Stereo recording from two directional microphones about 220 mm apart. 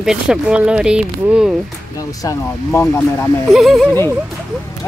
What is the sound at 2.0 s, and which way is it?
Speech, 15° left (ahead or behind).